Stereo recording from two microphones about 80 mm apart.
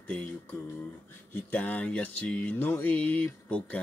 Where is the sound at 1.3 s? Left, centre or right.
Left.